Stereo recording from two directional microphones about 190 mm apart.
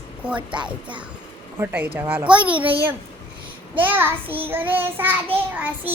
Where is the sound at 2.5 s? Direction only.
25° right (ahead or behind).